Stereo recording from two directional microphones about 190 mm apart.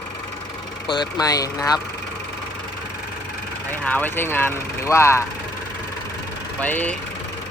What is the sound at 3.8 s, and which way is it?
Speech, 10° left (ahead or behind).